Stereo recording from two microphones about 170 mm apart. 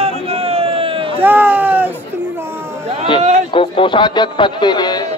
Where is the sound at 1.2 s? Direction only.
10° right (ahead or behind).